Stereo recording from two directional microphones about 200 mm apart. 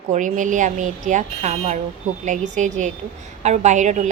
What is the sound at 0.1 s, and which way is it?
A woman's voice, 40° right (ahead or behind).